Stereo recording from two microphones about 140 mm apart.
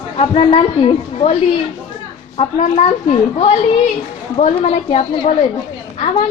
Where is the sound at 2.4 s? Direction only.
50° left (ahead or behind).